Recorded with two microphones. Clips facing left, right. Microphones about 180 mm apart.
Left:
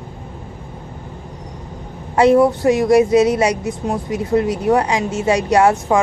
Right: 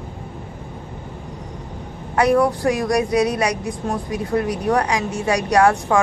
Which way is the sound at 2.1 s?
25° left (ahead or behind).